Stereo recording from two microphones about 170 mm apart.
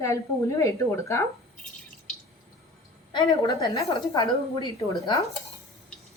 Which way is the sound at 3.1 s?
25° left (ahead or behind).